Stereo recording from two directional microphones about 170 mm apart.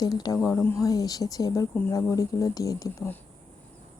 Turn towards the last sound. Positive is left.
turn(degrees=15)  # may be behind; listen again after turning